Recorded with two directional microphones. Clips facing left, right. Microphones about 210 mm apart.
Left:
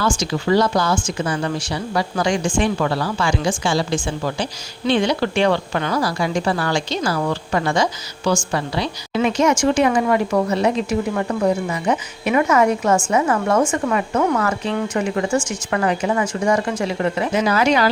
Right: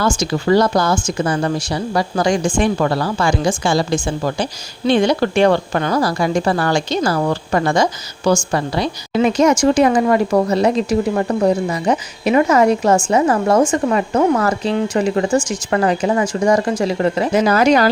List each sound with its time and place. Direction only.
0.0 s a woman's voice: 45° right (ahead or behind)